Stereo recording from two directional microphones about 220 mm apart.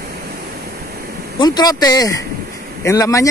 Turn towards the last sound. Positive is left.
turn(degrees=15)  # may be behind; listen again after turning